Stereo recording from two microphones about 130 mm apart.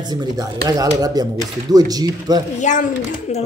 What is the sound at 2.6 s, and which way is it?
Speech, 70° left (ahead or behind).